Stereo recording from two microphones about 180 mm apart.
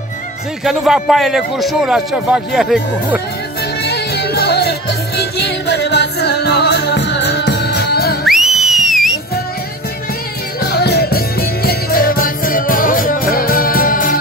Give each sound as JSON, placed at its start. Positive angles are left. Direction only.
{"t": 0.7, "sound": "a man's voice", "side_deg": 0}
{"t": 3.8, "sound": "music", "side_deg": 65}
{"t": 8.3, "sound": "whistle", "side_deg": 0}
{"t": 10.6, "sound": "music", "side_deg": 65}